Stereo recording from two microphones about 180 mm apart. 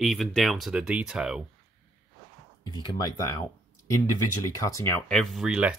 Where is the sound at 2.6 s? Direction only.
25° left (ahead or behind).